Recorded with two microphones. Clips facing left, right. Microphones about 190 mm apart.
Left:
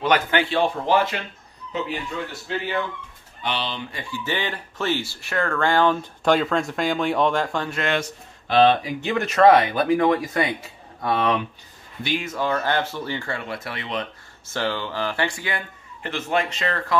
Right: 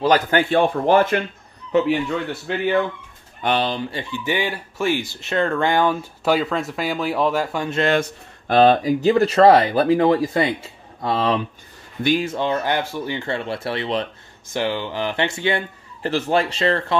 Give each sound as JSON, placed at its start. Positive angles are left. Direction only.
{"t": 0.0, "sound": "speech", "side_deg": -40}
{"t": 1.7, "sound": "a man's voice", "side_deg": -65}
{"t": 3.4, "sound": "speech", "side_deg": -45}
{"t": 4.2, "sound": "speech", "side_deg": -10}
{"t": 8.0, "sound": "a man's voice", "side_deg": -45}
{"t": 12.0, "sound": "speech", "side_deg": -45}
{"t": 12.3, "sound": "a man's voice", "side_deg": -25}
{"t": 14.5, "sound": "a man's voice", "side_deg": -15}